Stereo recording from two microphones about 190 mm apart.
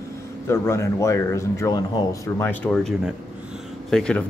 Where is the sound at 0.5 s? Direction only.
15° left (ahead or behind).